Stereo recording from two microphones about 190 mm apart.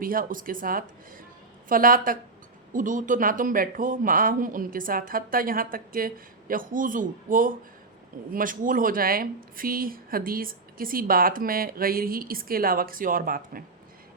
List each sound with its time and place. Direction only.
0.0 s speech: 50° right (ahead or behind)